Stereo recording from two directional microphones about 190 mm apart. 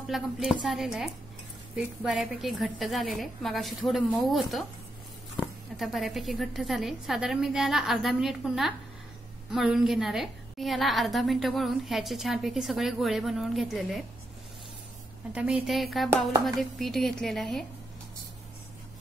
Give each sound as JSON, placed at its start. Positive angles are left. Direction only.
{"t": 0.0, "sound": "a woman's voice", "side_deg": 0}
{"t": 5.8, "sound": "a woman's voice", "side_deg": 0}
{"t": 15.3, "sound": "a woman's voice", "side_deg": -5}
{"t": 16.1, "sound": "speech", "side_deg": -20}
{"t": 16.5, "sound": "a woman's voice", "side_deg": 0}